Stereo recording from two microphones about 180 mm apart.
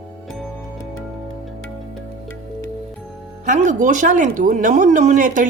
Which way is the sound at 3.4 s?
45° right (ahead or behind).